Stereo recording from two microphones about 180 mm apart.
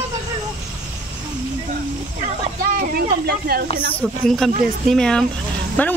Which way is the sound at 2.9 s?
60° right (ahead or behind).